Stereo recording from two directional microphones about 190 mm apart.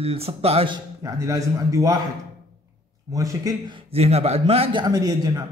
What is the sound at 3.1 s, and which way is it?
A man's voice, 15° right (ahead or behind).